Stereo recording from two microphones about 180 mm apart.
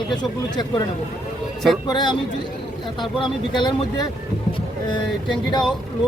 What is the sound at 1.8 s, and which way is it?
Speech, 25° left (ahead or behind).